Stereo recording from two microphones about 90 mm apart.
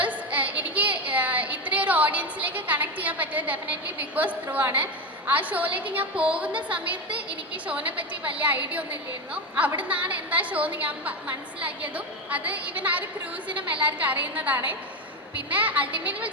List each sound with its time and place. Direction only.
0.0 s child singing: 15° right (ahead or behind)
0.8 s a sound: 15° right (ahead or behind)
4.5 s a woman's voice: 20° right (ahead or behind)